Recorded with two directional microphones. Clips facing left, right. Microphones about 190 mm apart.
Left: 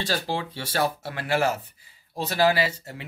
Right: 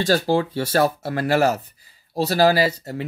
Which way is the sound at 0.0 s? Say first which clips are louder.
Right 9 dB; 45° right (ahead or behind).